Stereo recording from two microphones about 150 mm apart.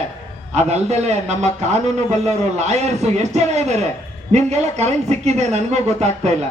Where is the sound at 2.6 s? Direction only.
50° right (ahead or behind).